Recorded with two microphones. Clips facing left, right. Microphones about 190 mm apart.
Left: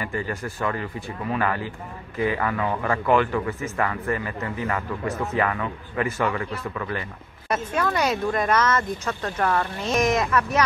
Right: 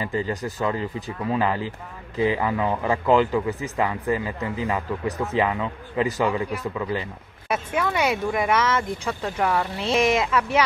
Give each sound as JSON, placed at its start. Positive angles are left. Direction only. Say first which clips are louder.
{"t": 0.0, "sound": "speech", "louder": "right 3 dB", "side_deg": -20}
{"t": 7.4, "sound": "speech", "louder": "even", "side_deg": -5}